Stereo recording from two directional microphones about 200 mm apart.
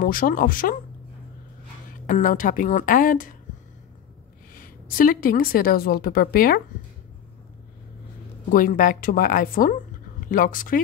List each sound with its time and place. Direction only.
0.0 s a woman's voice: 45° left (ahead or behind)
2.0 s a woman's voice: 40° left (ahead or behind)
4.6 s a woman's voice: 45° left (ahead or behind)
8.5 s a woman's voice: 45° left (ahead or behind)